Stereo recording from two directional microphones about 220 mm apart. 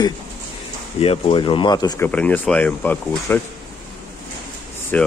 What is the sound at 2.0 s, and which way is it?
Speech, 5° left (ahead or behind).